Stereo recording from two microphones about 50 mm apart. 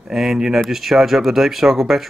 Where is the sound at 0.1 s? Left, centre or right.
Centre.